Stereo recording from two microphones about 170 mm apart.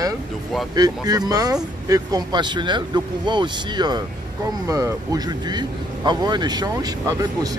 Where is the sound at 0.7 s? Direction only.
20° right (ahead or behind).